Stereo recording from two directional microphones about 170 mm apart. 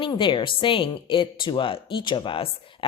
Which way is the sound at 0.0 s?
30° left (ahead or behind).